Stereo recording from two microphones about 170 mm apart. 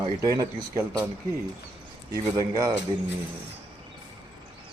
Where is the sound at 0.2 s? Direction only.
20° right (ahead or behind).